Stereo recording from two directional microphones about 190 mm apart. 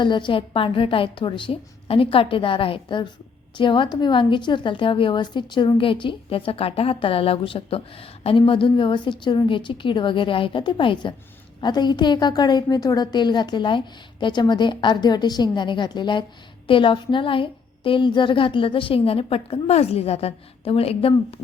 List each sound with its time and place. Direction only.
0.0 s a woman's voice: 25° left (ahead or behind)